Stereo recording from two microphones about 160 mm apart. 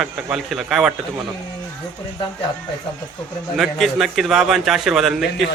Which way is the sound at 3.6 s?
Centre (ahead or behind).